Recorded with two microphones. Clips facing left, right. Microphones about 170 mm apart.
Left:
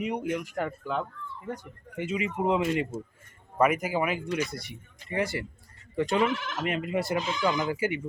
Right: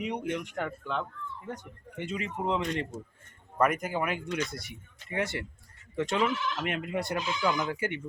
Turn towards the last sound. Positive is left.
turn(degrees=5)  # may be behind; listen again after turning